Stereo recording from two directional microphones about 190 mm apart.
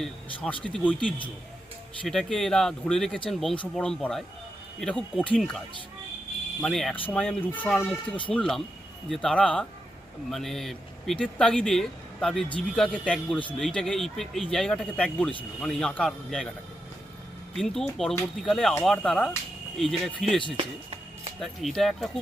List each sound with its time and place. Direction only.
0.0 s speech: 5° left (ahead or behind)
6.6 s speech: centre (ahead or behind)
17.5 s speech: centre (ahead or behind)
20.6 s music: 30° right (ahead or behind)
21.4 s speech: centre (ahead or behind)